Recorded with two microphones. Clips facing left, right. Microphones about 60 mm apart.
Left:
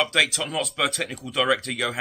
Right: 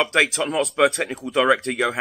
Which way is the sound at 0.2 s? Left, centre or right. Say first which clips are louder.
Right 4 dB; right.